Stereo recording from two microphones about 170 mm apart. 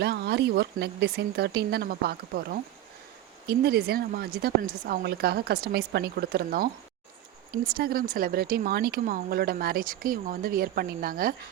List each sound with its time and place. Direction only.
0.0 s speech: 75° right (ahead or behind); by 11.3 s 60° right (ahead or behind)